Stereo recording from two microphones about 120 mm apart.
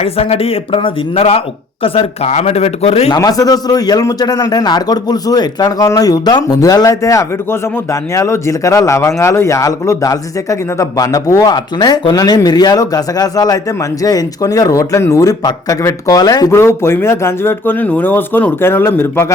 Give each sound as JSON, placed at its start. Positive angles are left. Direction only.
{"t": 0.0, "sound": "a man's voice", "side_deg": 55}
{"t": 3.1, "sound": "a man's voice", "side_deg": 30}
{"t": 16.5, "sound": "speech", "side_deg": 20}